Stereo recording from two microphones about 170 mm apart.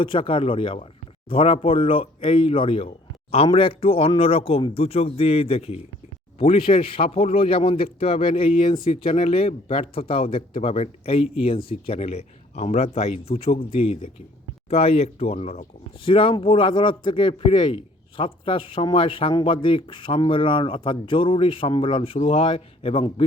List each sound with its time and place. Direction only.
0.0 s speech: 30° left (ahead or behind)